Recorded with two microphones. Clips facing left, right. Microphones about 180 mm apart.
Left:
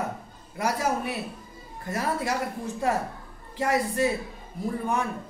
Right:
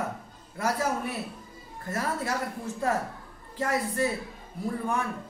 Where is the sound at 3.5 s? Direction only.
15° left (ahead or behind).